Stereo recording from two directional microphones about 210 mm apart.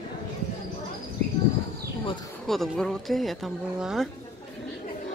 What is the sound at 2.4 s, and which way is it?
Speech, centre (ahead or behind).